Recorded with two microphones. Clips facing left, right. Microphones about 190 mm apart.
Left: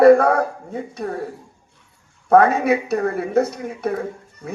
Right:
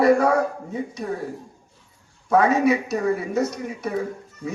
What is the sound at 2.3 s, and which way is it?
Speech, 60° left (ahead or behind).